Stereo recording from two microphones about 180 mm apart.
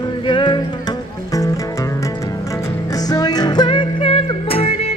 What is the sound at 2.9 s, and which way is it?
Music, 20° left (ahead or behind).